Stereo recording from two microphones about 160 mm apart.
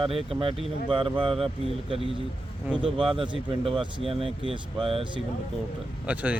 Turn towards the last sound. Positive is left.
turn(degrees=-10)  # may be behind; listen again after turning